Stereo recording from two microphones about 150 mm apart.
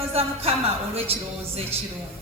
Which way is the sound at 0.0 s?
40° right (ahead or behind).